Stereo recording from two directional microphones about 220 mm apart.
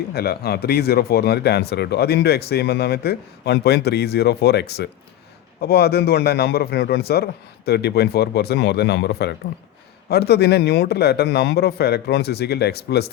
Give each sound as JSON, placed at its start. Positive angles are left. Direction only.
{"t": 0.1, "sound": "speech", "side_deg": 45}